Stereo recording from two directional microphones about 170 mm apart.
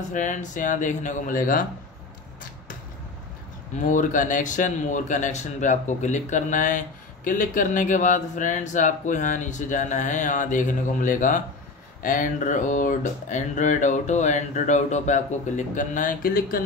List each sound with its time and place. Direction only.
0.1 s speech: 50° left (ahead or behind)
3.7 s speech: 50° left (ahead or behind)